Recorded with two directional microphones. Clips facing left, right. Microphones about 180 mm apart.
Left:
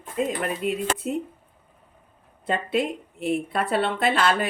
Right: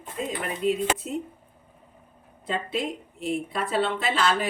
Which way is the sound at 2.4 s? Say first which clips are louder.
Left 4 dB; 60° left (ahead or behind).